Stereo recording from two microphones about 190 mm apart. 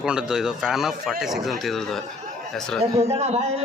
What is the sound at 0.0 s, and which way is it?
A man's voice, 5° right (ahead or behind).